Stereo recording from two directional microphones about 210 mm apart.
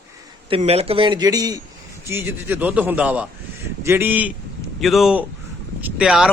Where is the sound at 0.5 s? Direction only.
30° right (ahead or behind).